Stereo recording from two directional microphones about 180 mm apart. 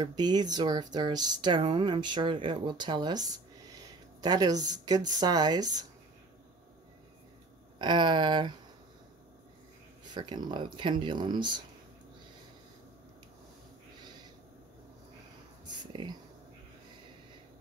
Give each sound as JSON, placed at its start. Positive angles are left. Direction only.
{"t": 0.0, "sound": "speech", "side_deg": -25}
{"t": 7.8, "sound": "speech", "side_deg": -25}
{"t": 10.1, "sound": "speech", "side_deg": -25}
{"t": 15.9, "sound": "speech", "side_deg": -25}